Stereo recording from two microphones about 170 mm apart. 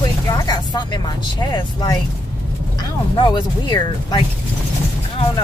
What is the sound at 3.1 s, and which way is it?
Speech, 25° left (ahead or behind).